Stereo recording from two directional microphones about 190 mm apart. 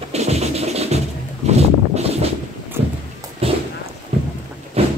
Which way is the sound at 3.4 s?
30° right (ahead or behind).